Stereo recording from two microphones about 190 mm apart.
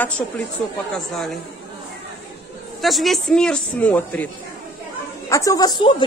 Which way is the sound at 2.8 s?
Centre (ahead or behind).